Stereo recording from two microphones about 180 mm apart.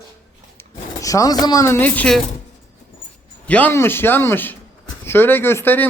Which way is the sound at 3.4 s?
10° left (ahead or behind).